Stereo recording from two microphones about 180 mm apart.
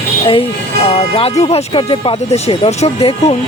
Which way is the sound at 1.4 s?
30° left (ahead or behind).